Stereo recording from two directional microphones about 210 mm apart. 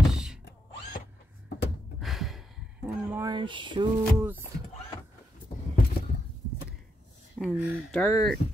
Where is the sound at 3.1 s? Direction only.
15° right (ahead or behind).